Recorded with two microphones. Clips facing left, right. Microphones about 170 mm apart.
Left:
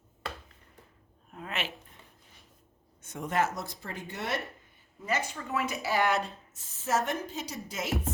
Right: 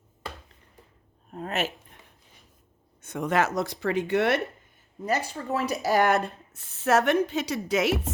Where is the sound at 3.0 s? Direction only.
75° right (ahead or behind).